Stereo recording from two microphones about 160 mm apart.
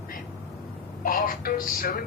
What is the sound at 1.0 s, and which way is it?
Speech, 60° left (ahead or behind).